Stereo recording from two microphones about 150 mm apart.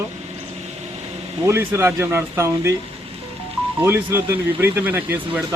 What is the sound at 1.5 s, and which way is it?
Speech, 15° right (ahead or behind).